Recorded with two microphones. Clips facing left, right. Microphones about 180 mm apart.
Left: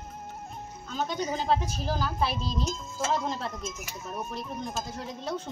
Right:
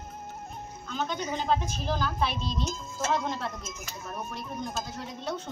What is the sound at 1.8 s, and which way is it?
Speech, 5° left (ahead or behind).